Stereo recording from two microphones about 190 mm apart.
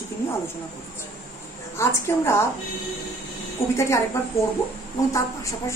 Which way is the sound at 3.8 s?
15° left (ahead or behind).